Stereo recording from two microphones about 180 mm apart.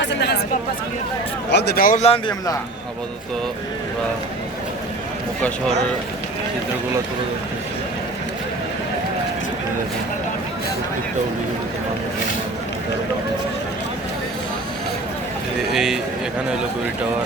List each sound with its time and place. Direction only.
0.0 s chatter: 70° left (ahead or behind)
1.5 s a man's voice: 70° left (ahead or behind); by 2.0 s 50° left (ahead or behind)
2.0 s a man's voice: 30° left (ahead or behind)
15.7 s a man's voice: centre (ahead or behind)